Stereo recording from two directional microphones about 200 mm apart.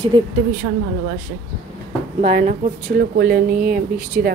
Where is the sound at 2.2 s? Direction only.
35° right (ahead or behind).